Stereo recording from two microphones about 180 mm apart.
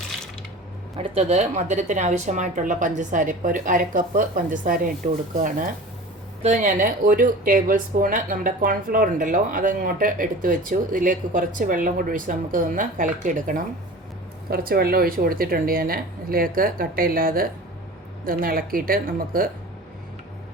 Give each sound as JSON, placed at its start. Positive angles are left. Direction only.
{"t": 0.9, "sound": "speech", "side_deg": -30}